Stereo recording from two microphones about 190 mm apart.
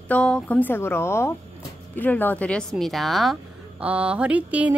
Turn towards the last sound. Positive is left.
turn(degrees=-5)  # may be behind; listen again after turning